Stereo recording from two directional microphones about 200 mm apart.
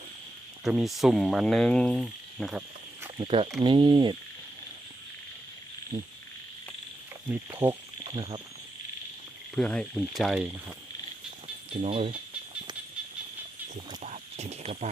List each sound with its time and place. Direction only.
0.6 s speech: centre (ahead or behind)
3.2 s cricket: 25° right (ahead or behind)
7.3 s speech: 15° right (ahead or behind)
8.0 s speech: 25° right (ahead or behind)
9.6 s speech: 5° left (ahead or behind)
11.7 s cricket: 30° right (ahead or behind)
14.0 s a sound: 35° right (ahead or behind)